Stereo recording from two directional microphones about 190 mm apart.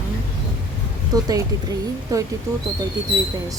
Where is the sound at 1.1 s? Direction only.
20° right (ahead or behind).